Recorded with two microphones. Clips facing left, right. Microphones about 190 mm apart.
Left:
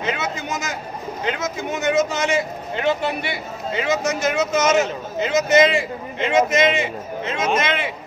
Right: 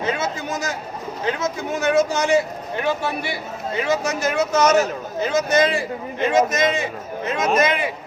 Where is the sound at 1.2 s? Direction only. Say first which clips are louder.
Right 1 dB; 20° left (ahead or behind).